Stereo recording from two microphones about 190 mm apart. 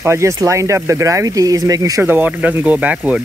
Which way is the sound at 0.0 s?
15° right (ahead or behind).